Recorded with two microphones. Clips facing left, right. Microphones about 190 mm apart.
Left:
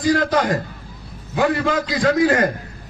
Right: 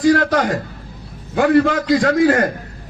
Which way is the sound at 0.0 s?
50° right (ahead or behind).